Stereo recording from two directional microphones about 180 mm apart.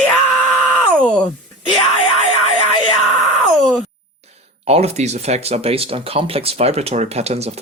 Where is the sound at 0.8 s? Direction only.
5° left (ahead or behind).